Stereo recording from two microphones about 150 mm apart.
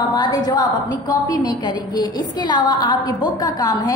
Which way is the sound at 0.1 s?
25° left (ahead or behind).